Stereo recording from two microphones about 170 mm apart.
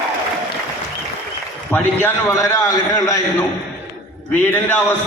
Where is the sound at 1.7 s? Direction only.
10° left (ahead or behind).